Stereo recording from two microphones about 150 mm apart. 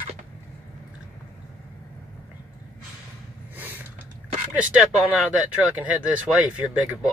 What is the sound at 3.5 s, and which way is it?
Snort, 10° right (ahead or behind).